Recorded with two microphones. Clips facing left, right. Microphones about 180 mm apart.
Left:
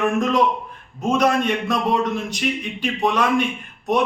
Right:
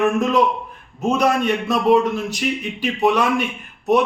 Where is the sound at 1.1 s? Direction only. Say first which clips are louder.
Even; 5° right (ahead or behind).